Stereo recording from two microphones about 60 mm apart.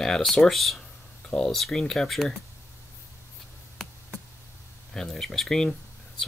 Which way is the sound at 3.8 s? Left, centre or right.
Centre.